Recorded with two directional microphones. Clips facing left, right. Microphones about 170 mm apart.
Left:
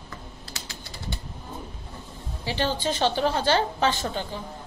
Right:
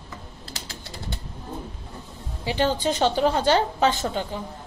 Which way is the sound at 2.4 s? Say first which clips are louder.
Right 4 dB; 20° right (ahead or behind).